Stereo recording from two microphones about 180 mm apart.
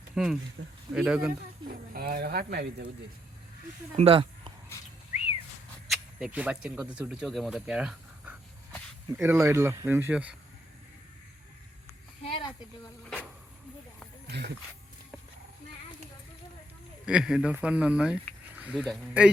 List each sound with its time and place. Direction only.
0.1 s speech: 5° right (ahead or behind)
0.6 s speech: 85° right
0.9 s speech: 5° right (ahead or behind)
1.6 s speech: 55° right (ahead or behind)
3.9 s speech: 30° right (ahead or behind)
5.9 s speech: 5° right (ahead or behind)
12.2 s a sound: 30° left (ahead or behind)
14.3 s a sound: 65° right (ahead or behind)
17.1 s speech: 5° right (ahead or behind)